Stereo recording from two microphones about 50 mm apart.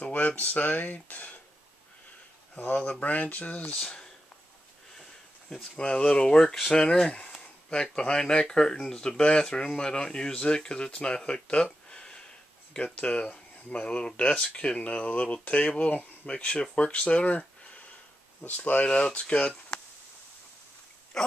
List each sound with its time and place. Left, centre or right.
0.0 s a sound: left
0.4 s speech: left
2.5 s speech: left
3.8 s speech: centre
5.5 s speech: centre